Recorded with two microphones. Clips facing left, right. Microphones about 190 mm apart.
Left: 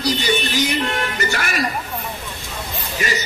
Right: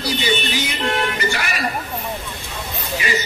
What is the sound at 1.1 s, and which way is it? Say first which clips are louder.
Speech: even; 45° left (ahead or behind).